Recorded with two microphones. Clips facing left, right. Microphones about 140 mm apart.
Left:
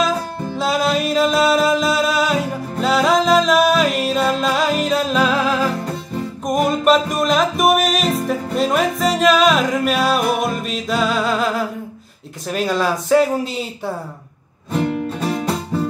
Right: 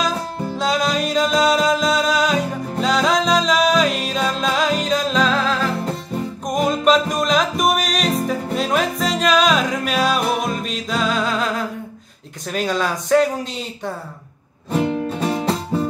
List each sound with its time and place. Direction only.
0.6 s music: centre (ahead or behind)
12.4 s speech: centre (ahead or behind)
15.3 s music: 25° right (ahead or behind)